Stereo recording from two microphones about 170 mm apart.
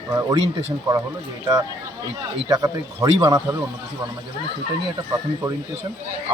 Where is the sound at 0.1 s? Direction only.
20° right (ahead or behind).